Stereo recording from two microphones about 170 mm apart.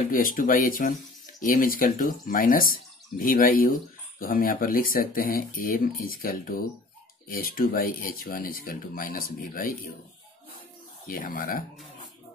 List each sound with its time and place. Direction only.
0.1 s speech: 55° left (ahead or behind)
11.1 s speech: 55° left (ahead or behind)